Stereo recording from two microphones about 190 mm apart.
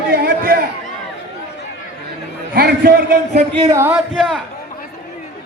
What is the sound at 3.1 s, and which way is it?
Speech, 40° right (ahead or behind).